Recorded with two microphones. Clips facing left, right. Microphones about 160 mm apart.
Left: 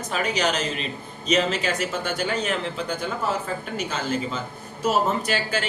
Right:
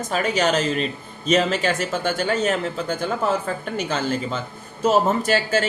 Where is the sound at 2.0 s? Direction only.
50° right (ahead or behind).